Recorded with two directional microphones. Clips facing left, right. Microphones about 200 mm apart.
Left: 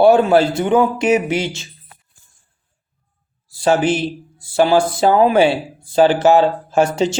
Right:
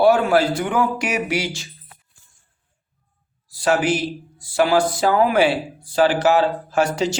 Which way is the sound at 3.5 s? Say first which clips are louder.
Left 3 dB; 25° left (ahead or behind).